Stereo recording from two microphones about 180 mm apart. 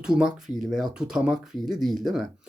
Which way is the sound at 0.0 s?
5° right (ahead or behind).